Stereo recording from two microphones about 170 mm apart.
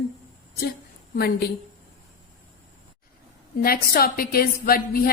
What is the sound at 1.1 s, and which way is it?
Speech, 65° left (ahead or behind).